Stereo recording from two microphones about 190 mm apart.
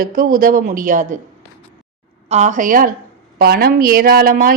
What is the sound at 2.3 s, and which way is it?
A woman's voice, 35° right (ahead or behind).